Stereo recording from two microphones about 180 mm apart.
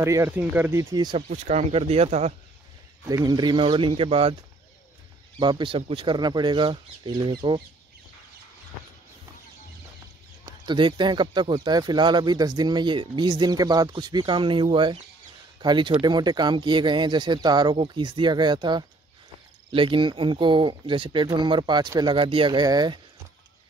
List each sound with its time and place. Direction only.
0.0 s speech: 15° right (ahead or behind)
1.1 s speech: 40° right (ahead or behind)
3.1 s speech: 20° right (ahead or behind)
5.4 s speech: 25° right (ahead or behind)
10.6 s speech: 25° right (ahead or behind)